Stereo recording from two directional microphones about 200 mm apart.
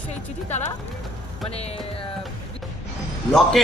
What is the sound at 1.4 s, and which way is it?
Speech, 30° left (ahead or behind).